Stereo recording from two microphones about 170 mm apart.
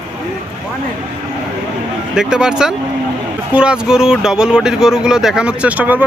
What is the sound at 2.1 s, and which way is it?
Speech, 5° right (ahead or behind).